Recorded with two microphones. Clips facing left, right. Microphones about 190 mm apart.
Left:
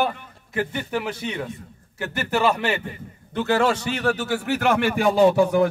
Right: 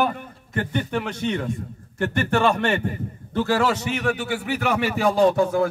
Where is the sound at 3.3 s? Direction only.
20° left (ahead or behind); by 4.5 s 40° left (ahead or behind).